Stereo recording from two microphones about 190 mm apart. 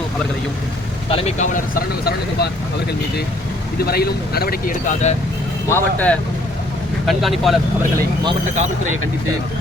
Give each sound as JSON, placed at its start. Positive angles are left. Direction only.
{"t": 1.1, "sound": "speech", "side_deg": 30}
{"t": 1.5, "sound": "speech", "side_deg": 50}
{"t": 3.8, "sound": "speech", "side_deg": 55}
{"t": 5.6, "sound": "speech", "side_deg": 10}
{"t": 7.1, "sound": "speech", "side_deg": 0}